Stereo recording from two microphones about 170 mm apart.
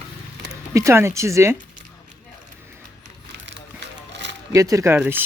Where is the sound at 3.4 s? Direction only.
90° right.